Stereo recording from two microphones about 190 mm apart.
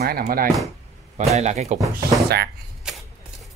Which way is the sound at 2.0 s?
55° right (ahead or behind).